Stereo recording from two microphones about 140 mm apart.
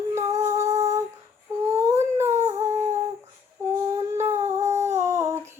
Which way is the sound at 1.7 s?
20° right (ahead or behind).